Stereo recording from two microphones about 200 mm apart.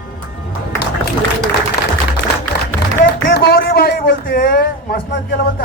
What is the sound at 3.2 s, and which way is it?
Speech, 60° left (ahead or behind).